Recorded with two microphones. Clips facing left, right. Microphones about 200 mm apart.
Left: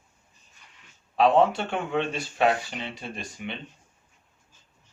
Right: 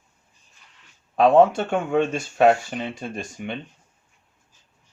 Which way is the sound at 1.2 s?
50° right (ahead or behind).